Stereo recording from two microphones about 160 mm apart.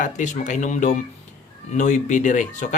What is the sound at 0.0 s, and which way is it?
A man's voice, 50° left (ahead or behind).